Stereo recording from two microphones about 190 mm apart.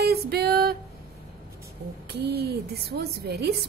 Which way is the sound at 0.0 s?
55° right (ahead or behind).